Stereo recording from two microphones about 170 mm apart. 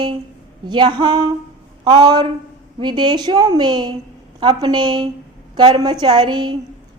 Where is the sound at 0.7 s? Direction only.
25° right (ahead or behind).